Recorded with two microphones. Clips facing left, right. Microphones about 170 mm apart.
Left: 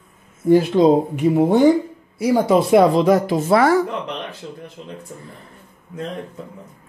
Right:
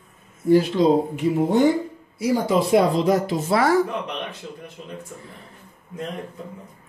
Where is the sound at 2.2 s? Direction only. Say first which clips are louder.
Left 4 dB; 60° left (ahead or behind).